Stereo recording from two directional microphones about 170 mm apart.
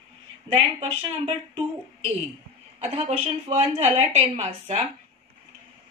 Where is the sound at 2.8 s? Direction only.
35° right (ahead or behind).